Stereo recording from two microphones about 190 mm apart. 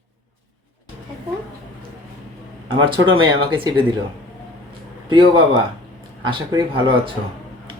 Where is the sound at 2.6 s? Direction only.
25° right (ahead or behind).